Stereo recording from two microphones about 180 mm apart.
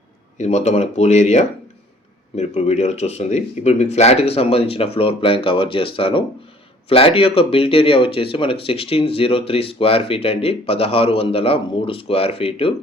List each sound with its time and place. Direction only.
0.3 s speech: 40° left (ahead or behind)